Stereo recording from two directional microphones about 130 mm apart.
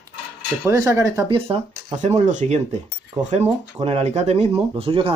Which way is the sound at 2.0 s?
65° right (ahead or behind).